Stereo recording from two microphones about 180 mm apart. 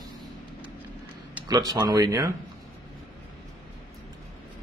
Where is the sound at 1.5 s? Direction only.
20° right (ahead or behind).